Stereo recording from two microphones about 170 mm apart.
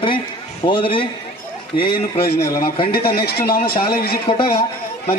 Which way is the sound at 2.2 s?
65° left (ahead or behind).